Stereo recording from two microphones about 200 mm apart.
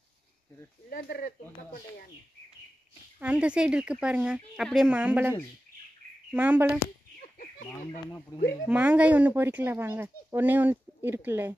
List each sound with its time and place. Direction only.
0.8 s speech: 50° left (ahead or behind)
3.2 s speech: 5° right (ahead or behind)
7.3 s chicken: 40° left (ahead or behind)
8.6 s speech: 5° right (ahead or behind)